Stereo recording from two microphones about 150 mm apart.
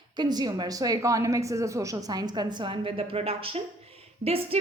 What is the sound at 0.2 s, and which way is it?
A woman's voice, 25° right (ahead or behind).